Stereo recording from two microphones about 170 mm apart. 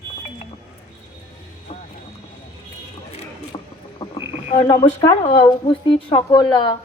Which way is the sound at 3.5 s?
25° left (ahead or behind).